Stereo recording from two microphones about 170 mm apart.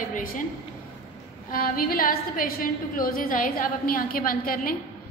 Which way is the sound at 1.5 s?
60° left (ahead or behind).